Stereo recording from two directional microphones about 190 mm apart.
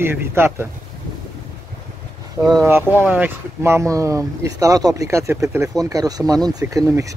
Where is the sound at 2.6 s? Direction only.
10° right (ahead or behind).